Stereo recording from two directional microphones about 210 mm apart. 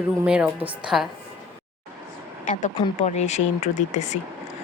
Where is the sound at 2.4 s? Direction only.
35° left (ahead or behind).